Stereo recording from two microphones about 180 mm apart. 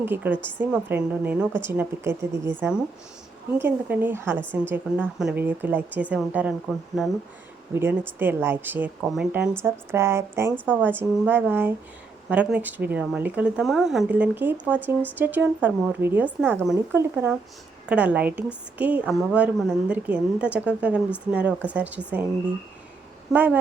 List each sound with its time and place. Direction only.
0.0 s a woman's voice: 10° right (ahead or behind)
23.3 s a woman's voice: 10° right (ahead or behind)